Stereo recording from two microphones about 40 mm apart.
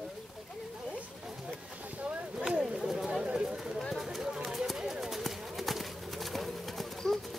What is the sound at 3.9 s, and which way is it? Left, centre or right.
Run, centre.